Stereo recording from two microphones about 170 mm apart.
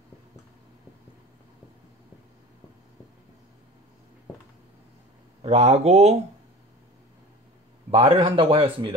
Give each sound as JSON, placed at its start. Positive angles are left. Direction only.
{"t": 5.4, "sound": "speech", "side_deg": -35}
{"t": 7.9, "sound": "speech", "side_deg": -30}